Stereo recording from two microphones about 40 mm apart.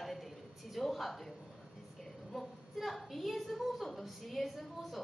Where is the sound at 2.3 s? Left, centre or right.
Centre.